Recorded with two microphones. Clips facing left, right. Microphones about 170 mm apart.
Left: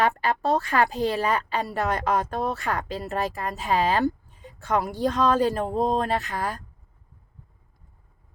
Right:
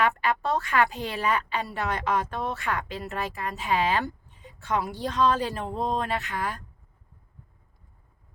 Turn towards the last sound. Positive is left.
turn(degrees=40)  # may be behind; listen again after turning